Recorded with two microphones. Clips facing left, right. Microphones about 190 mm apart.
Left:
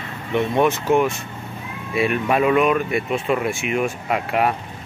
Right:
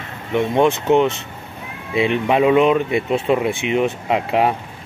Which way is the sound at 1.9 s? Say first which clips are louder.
Right 3 dB; 20° right (ahead or behind).